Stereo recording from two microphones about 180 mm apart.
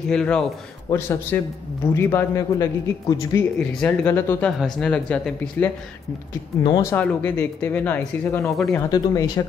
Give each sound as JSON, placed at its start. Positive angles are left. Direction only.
{"t": 0.1, "sound": "a man's voice", "side_deg": 5}
{"t": 6.8, "sound": "a man's voice", "side_deg": 10}
{"t": 8.9, "sound": "speech", "side_deg": 20}